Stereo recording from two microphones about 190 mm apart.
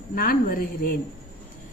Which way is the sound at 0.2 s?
45° left (ahead or behind).